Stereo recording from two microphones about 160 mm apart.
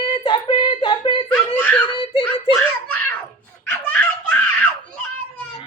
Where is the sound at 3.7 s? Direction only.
10° left (ahead or behind).